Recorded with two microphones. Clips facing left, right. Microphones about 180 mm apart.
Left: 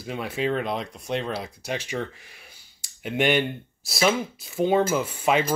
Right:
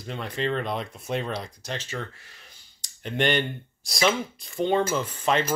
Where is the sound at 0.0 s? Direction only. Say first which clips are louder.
Left 2 dB; 5° left (ahead or behind).